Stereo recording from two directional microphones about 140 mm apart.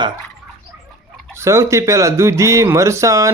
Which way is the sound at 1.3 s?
20° right (ahead or behind).